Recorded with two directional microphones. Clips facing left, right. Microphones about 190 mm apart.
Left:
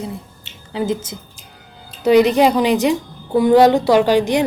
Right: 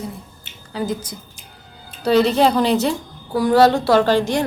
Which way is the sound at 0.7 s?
25° left (ahead or behind).